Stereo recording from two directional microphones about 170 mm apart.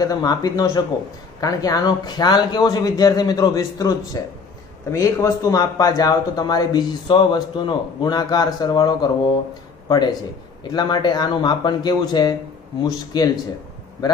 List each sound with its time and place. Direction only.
0.0 s speech: 25° left (ahead or behind)